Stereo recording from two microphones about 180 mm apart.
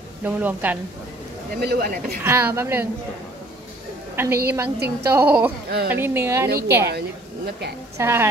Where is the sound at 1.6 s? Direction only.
55° right (ahead or behind).